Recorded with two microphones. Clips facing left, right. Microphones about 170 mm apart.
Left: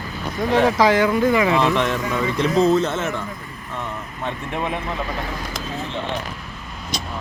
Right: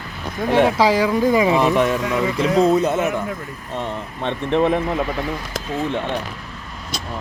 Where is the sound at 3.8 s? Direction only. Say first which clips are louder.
Right 4 dB; 25° right (ahead or behind).